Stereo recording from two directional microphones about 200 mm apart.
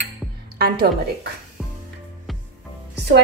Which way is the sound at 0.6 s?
50° right (ahead or behind).